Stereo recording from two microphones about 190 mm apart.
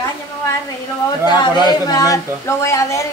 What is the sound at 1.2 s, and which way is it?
Speech, 20° left (ahead or behind).